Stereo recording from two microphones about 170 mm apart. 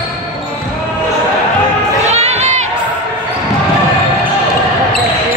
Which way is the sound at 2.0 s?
40° right (ahead or behind).